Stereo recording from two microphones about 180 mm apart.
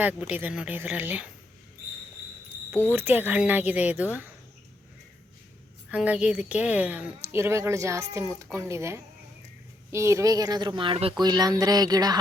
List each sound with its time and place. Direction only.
0.0 s a woman's voice: 10° right (ahead or behind)
2.9 s a woman's voice: 10° right (ahead or behind)
5.9 s a woman's voice: 5° right (ahead or behind)